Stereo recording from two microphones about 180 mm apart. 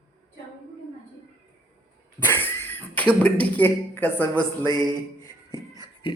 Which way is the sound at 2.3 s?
10° left (ahead or behind).